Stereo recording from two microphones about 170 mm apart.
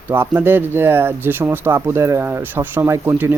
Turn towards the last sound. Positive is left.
turn(degrees=-15)  # may be behind; listen again after turning